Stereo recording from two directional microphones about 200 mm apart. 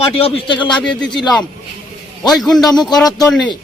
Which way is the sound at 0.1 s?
30° left (ahead or behind).